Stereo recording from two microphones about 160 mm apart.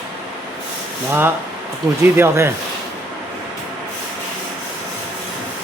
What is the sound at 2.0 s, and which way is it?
Speech, 15° right (ahead or behind).